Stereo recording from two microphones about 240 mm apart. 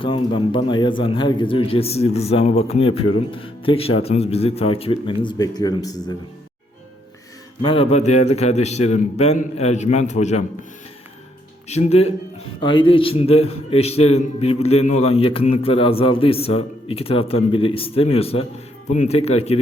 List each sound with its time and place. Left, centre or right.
0.0 s a man's voice: left
7.6 s a man's voice: left
11.7 s a man's voice: left